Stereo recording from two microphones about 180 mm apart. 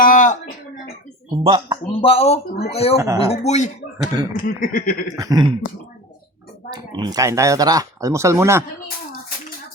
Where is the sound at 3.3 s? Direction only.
40° left (ahead or behind).